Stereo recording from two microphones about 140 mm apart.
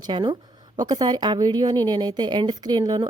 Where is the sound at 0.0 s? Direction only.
35° right (ahead or behind).